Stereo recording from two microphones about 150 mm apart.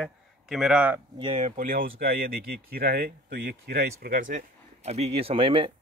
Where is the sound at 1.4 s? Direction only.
60° right (ahead or behind); by 5.7 s 35° right (ahead or behind).